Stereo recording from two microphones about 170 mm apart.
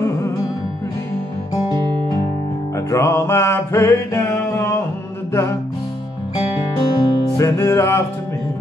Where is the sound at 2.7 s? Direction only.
15° left (ahead or behind).